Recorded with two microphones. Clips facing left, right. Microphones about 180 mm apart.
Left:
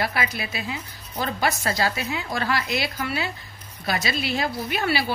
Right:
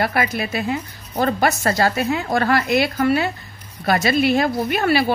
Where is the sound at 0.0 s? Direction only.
55° right (ahead or behind).